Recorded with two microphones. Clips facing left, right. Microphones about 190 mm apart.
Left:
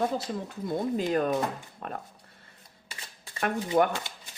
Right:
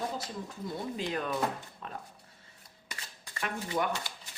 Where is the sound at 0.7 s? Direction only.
45° left (ahead or behind).